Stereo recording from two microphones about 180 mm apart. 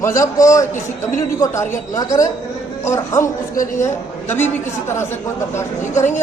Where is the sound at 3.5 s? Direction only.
50° left (ahead or behind).